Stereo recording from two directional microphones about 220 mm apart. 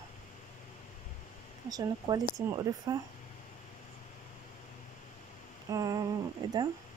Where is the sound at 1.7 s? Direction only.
15° right (ahead or behind).